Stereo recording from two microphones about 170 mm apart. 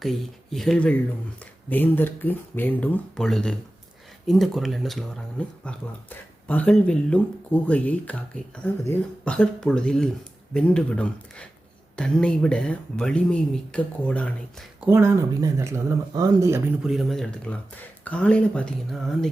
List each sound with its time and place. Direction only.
0.0 s speech: centre (ahead or behind)
14.8 s speech: 15° right (ahead or behind)
16.8 s speech: centre (ahead or behind)